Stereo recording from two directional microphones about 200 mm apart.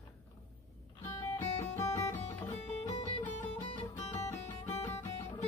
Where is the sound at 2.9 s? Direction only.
30° left (ahead or behind).